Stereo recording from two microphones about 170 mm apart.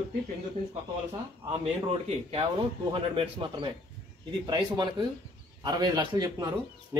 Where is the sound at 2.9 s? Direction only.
30° right (ahead or behind).